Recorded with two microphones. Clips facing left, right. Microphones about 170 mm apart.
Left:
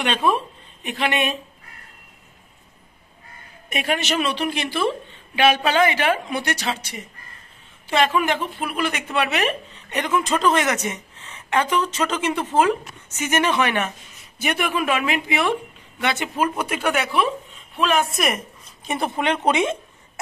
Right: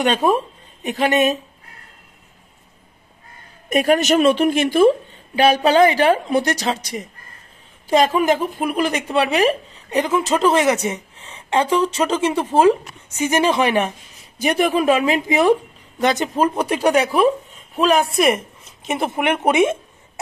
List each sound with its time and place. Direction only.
0.0 s speech: 45° right (ahead or behind)
3.6 s a woman's voice: 40° right (ahead or behind)
11.0 s a sound: 10° right (ahead or behind)
11.6 s speech: 10° right (ahead or behind)
12.5 s a woman's voice: 35° right (ahead or behind)